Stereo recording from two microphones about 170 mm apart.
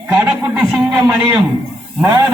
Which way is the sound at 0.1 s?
10° right (ahead or behind).